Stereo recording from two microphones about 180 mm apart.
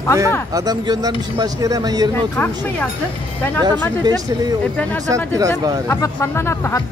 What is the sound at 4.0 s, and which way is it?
Speech, 20° right (ahead or behind).